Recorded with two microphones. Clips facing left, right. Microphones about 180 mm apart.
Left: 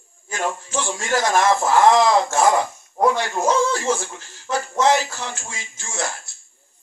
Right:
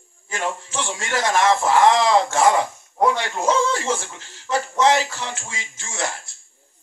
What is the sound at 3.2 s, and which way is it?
Speech, 25° right (ahead or behind).